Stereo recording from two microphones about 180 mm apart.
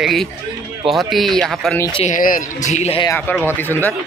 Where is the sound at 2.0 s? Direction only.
45° left (ahead or behind).